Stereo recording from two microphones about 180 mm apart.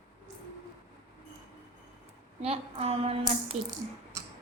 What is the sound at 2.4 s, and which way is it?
A woman's voice, 35° right (ahead or behind).